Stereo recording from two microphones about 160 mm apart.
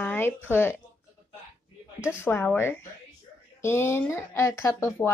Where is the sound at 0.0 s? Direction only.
10° left (ahead or behind).